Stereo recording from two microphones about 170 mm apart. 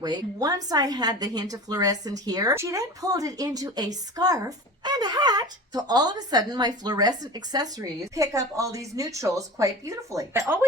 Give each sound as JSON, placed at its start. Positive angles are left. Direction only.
{"t": 0.0, "sound": "a woman's voice", "side_deg": -25}